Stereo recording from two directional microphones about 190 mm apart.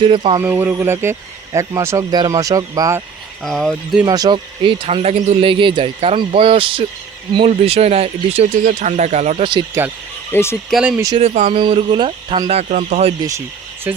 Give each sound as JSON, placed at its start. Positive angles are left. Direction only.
{"t": 0.0, "sound": "speech", "side_deg": -25}
{"t": 0.3, "sound": "speech", "side_deg": -10}
{"t": 3.4, "sound": "speech", "side_deg": 0}
{"t": 4.0, "sound": "speech", "side_deg": -20}
{"t": 9.8, "sound": "speech", "side_deg": -15}
{"t": 10.3, "sound": "speech", "side_deg": 15}
{"t": 10.7, "sound": "speech", "side_deg": -5}
{"t": 11.2, "sound": "speech", "side_deg": -35}
{"t": 13.9, "sound": "speech", "side_deg": -10}